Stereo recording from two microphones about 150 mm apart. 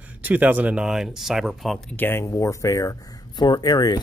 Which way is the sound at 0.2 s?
10° right (ahead or behind).